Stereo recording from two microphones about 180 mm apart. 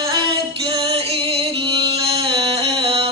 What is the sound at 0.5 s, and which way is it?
Music, 30° right (ahead or behind).